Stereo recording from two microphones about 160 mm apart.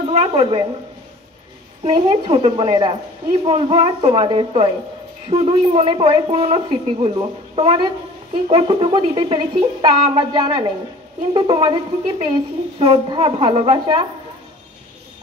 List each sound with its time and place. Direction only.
0.1 s a woman's voice: 35° right (ahead or behind)
1.9 s a woman's voice: 30° right (ahead or behind)